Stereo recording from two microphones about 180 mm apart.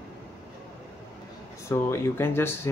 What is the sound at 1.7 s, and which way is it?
Speech, 15° left (ahead or behind).